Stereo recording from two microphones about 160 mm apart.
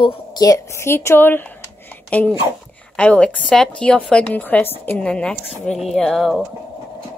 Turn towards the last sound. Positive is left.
turn(degrees=0)  # may be behind; listen again after turning